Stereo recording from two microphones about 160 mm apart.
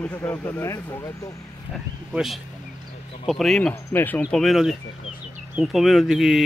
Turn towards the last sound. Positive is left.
turn(degrees=-5)  # may be behind; listen again after turning